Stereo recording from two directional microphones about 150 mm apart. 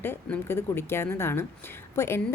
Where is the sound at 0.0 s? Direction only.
15° left (ahead or behind).